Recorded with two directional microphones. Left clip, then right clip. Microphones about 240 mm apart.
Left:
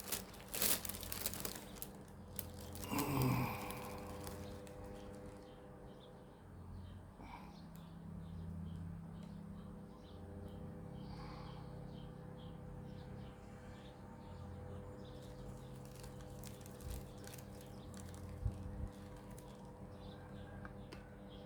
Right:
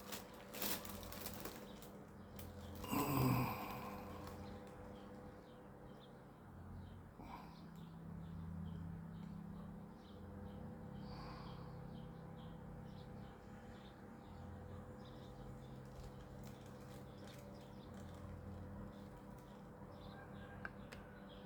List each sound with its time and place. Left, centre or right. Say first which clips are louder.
0.1 s crushing: left 5 dB; left
2.9 s sigh: even; centre